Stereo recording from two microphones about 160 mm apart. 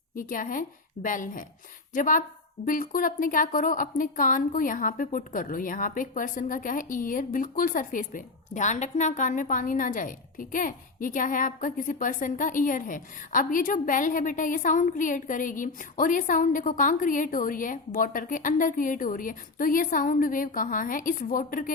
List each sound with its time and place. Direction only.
0.2 s a woman's voice: 60° left (ahead or behind)